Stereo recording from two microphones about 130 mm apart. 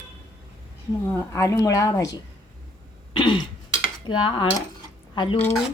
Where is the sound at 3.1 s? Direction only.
40° left (ahead or behind).